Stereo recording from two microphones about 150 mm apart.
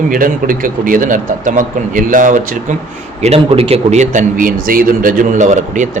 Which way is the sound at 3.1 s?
45° right (ahead or behind).